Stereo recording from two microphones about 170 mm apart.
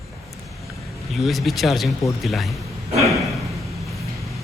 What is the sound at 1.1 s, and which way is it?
Speech, centre (ahead or behind).